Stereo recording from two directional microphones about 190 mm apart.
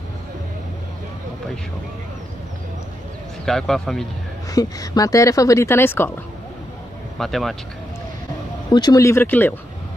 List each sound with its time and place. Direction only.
3.4 s speech: centre (ahead or behind)
4.5 s a woman's voice: 20° left (ahead or behind)
7.2 s speech: centre (ahead or behind)
8.7 s a woman's voice: 20° left (ahead or behind)